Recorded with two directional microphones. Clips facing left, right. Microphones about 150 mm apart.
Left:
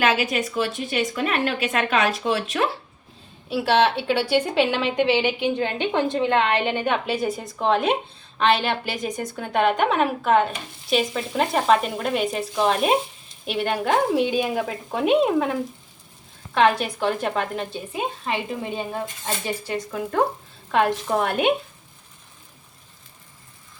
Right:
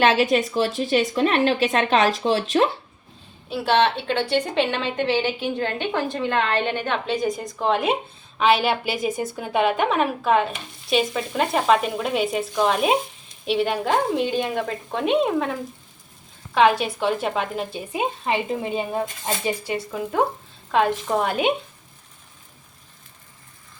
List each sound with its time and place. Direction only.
0.0 s speech: 30° right (ahead or behind)
3.5 s a woman's voice: 5° left (ahead or behind)
16.6 s a woman's voice: centre (ahead or behind)
17.7 s speech: 20° right (ahead or behind)
19.7 s a woman's voice: 10° right (ahead or behind)